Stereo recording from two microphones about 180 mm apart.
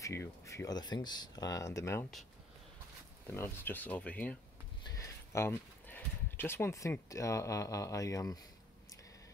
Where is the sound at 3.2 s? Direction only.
10° left (ahead or behind).